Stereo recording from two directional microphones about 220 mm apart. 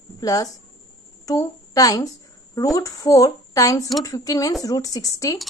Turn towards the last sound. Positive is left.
turn(degrees=15)  # may be behind; listen again after turning